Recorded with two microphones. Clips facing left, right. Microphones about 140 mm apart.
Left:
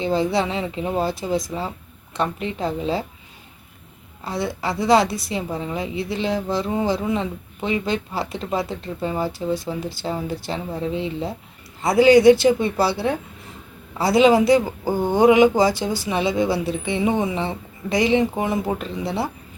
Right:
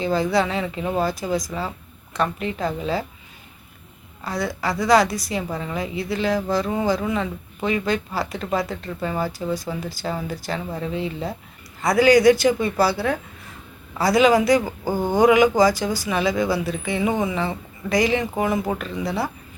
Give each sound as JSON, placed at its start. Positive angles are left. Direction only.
{"t": 0.0, "sound": "a woman's voice", "side_deg": 25}
{"t": 4.2, "sound": "a woman's voice", "side_deg": 25}